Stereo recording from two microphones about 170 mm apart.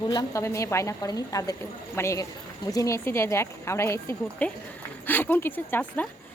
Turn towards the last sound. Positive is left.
turn(degrees=10)  # may be behind; listen again after turning